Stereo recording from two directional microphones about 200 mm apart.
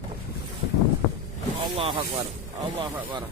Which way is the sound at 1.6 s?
25° right (ahead or behind).